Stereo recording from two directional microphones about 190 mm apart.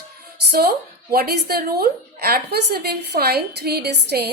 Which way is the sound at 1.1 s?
50° right (ahead or behind).